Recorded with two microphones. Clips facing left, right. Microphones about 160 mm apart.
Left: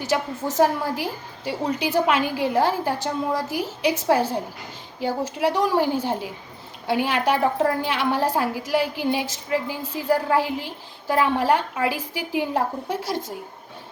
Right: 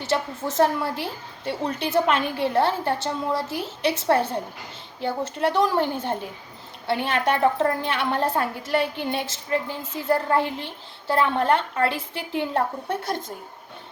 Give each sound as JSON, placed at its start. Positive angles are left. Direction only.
{"t": 0.0, "sound": "a woman's voice", "side_deg": 10}